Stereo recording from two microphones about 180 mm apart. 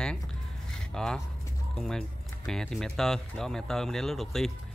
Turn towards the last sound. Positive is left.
turn(degrees=0)  # may be behind; listen again after turning